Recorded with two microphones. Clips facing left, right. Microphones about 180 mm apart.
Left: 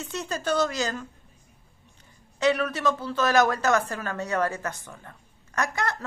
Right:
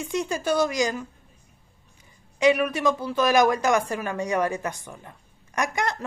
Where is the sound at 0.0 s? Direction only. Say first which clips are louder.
Right 4 dB; 15° right (ahead or behind).